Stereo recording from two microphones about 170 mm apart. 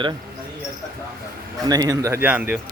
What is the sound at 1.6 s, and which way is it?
Speech, 20° right (ahead or behind).